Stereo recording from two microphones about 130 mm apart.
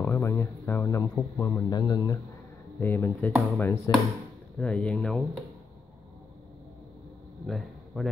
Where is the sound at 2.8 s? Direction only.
15° left (ahead or behind).